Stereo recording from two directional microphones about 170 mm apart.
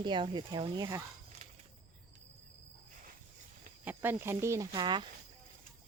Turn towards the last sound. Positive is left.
turn(degrees=-25)  # may be behind; listen again after turning